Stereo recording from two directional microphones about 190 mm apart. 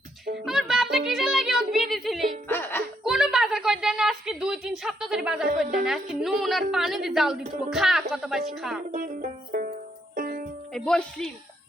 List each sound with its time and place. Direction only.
0.4 s music: centre (ahead or behind)
2.5 s music: 10° left (ahead or behind)
3.0 s a sound: centre (ahead or behind)
5.7 s a woman's voice: centre (ahead or behind)
8.9 s banjo: 45° right (ahead or behind)
10.2 s music: 45° right (ahead or behind)
10.8 s a woman's voice: 5° left (ahead or behind)